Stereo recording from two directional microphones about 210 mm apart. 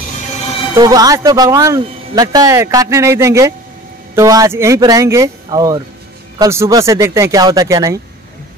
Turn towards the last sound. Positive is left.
turn(degrees=-15)  # may be behind; listen again after turning